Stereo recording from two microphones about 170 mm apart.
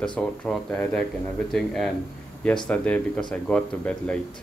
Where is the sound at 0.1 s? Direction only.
5° left (ahead or behind).